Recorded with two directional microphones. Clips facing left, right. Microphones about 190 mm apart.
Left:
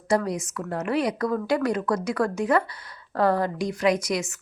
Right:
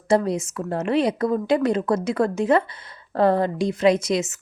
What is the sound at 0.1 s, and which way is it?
A woman's voice, 25° right (ahead or behind).